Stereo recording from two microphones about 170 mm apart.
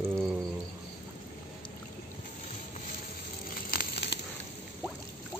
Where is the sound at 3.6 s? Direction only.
65° left (ahead or behind).